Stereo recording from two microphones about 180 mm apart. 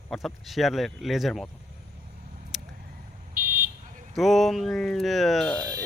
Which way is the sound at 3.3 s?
50° right (ahead or behind).